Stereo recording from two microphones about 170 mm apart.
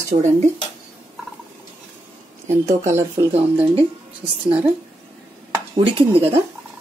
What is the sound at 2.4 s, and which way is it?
Speech, 15° right (ahead or behind).